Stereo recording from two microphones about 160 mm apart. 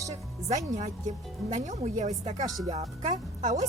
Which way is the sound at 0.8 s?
50° right (ahead or behind).